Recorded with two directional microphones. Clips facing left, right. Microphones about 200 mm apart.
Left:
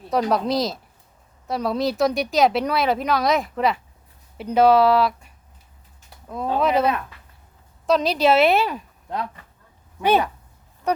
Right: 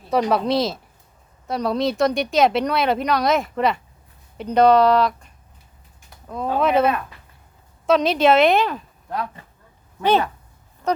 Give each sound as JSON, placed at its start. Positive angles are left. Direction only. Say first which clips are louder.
{"t": 0.1, "sound": "speech", "louder": "right 2 dB", "side_deg": 0}
{"t": 7.9, "sound": "speech", "louder": "right 2 dB", "side_deg": 0}
{"t": 10.0, "sound": "speech", "louder": "even", "side_deg": 10}
{"t": 10.8, "sound": "a sound", "louder": "right 1 dB", "side_deg": 15}